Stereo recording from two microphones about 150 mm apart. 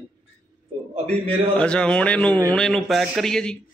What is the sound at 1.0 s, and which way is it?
Speech, 40° right (ahead or behind).